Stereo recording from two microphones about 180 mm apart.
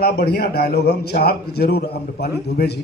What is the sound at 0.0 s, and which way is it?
A man's voice, 65° left (ahead or behind).